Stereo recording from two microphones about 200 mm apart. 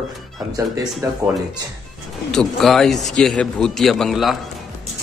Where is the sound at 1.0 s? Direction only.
15° right (ahead or behind).